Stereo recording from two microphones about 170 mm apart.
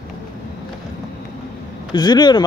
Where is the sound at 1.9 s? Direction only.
25° left (ahead or behind).